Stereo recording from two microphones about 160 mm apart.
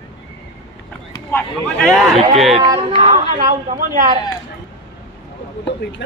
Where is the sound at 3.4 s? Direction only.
60° right (ahead or behind).